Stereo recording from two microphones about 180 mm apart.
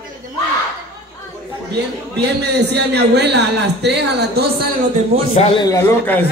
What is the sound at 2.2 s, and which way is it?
A man's voice, 70° right (ahead or behind).